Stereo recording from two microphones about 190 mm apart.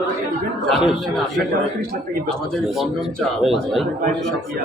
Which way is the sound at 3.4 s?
Centre (ahead or behind).